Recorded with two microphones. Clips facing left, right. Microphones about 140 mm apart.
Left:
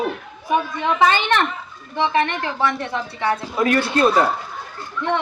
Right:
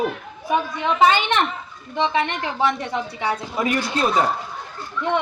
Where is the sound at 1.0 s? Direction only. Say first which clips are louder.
Even; 20° right (ahead or behind).